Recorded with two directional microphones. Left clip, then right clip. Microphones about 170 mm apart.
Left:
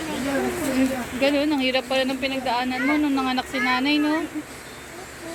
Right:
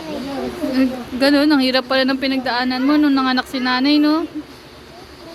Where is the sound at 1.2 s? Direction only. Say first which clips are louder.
Right 7 dB; 45° right (ahead or behind).